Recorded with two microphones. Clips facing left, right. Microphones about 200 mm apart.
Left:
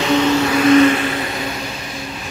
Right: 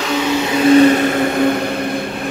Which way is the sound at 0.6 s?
30° right (ahead or behind).